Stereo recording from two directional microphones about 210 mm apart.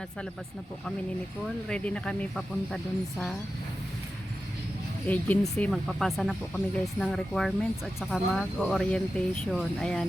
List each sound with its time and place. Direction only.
1.7 s speech: 5° left (ahead or behind)
5.0 s speech: 10° left (ahead or behind)